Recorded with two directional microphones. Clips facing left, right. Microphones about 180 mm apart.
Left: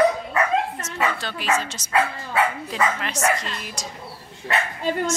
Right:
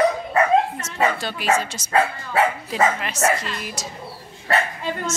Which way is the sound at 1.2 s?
10° right (ahead or behind).